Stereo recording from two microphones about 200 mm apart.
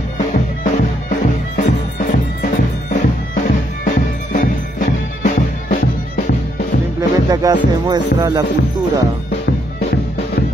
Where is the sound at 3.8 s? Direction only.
40° left (ahead or behind).